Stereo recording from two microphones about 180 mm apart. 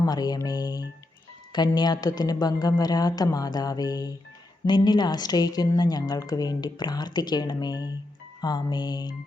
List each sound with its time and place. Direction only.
0.0 s a woman's voice: 20° left (ahead or behind)